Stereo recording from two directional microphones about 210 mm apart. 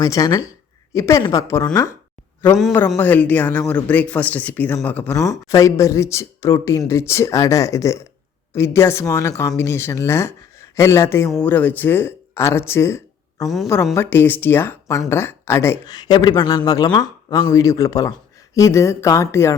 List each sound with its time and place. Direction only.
0.0 s speech: 15° left (ahead or behind)
2.6 s a woman's voice: centre (ahead or behind)
13.4 s a woman's voice: centre (ahead or behind)
13.9 s speech: 10° left (ahead or behind)